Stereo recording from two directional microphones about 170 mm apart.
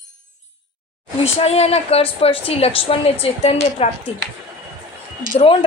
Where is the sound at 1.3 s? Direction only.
35° left (ahead or behind).